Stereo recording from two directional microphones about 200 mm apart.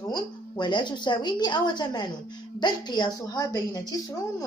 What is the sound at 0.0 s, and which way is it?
A woman's voice, 20° left (ahead or behind).